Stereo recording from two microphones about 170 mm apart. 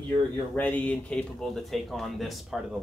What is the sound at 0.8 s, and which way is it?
Speech, 5° left (ahead or behind).